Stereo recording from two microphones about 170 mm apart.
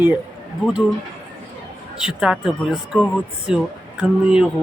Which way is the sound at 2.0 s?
5° right (ahead or behind).